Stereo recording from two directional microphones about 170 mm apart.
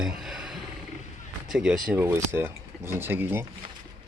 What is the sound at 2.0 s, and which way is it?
Speech, 15° right (ahead or behind).